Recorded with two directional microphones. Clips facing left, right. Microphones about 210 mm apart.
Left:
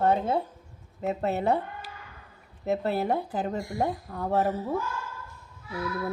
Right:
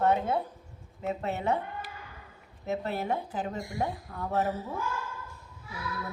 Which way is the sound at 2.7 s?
35° left (ahead or behind).